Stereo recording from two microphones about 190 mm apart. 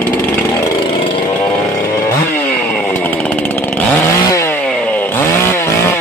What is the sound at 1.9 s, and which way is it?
Chainsaw, 15° left (ahead or behind).